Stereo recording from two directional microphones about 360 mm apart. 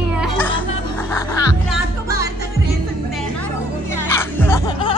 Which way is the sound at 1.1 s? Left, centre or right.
Centre.